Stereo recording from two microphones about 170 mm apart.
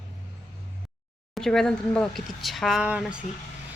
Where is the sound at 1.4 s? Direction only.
Centre (ahead or behind).